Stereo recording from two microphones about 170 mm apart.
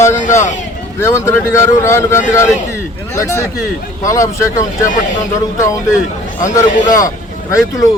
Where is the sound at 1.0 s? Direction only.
15° left (ahead or behind).